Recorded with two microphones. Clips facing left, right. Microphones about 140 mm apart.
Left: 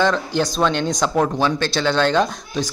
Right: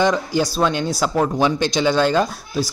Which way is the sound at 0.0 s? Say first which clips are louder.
Right 1 dB; 10° right (ahead or behind).